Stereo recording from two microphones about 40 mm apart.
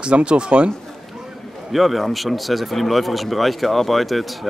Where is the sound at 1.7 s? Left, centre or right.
Centre.